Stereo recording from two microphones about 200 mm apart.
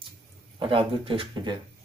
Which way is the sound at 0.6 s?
25° right (ahead or behind).